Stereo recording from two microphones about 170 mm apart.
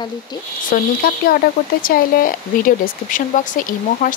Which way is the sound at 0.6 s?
60° left (ahead or behind).